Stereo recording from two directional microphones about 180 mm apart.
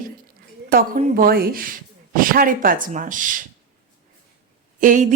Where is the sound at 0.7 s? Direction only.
55° right (ahead or behind).